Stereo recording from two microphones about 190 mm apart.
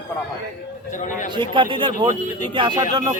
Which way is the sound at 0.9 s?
40° left (ahead or behind).